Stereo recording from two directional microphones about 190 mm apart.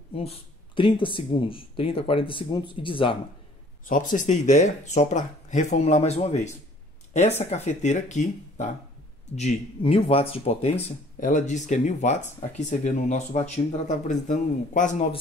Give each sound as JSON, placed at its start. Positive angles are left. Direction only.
{"t": 0.7, "sound": "speech", "side_deg": 25}
{"t": 3.8, "sound": "speech", "side_deg": 45}